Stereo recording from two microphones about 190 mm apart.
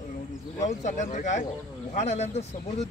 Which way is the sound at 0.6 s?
40° left (ahead or behind).